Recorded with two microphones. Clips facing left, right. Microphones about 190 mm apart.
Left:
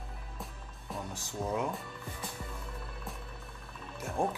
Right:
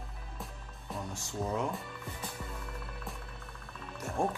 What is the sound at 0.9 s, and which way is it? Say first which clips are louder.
Speech: even; centre (ahead or behind).